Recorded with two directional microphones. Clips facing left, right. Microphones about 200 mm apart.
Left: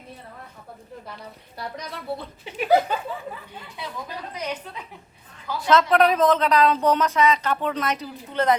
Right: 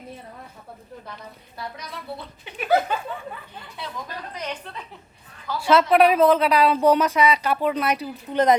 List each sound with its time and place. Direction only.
2.6 s laughter: 20° left (ahead or behind)
3.8 s a woman's voice: 10° left (ahead or behind)
5.5 s speech: 10° right (ahead or behind)